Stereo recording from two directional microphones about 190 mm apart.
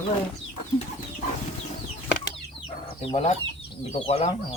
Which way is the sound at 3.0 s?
35° left (ahead or behind).